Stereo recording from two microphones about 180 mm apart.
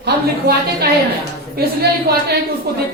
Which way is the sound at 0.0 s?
65° right (ahead or behind).